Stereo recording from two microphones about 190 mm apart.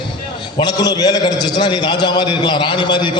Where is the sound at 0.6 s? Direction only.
20° left (ahead or behind).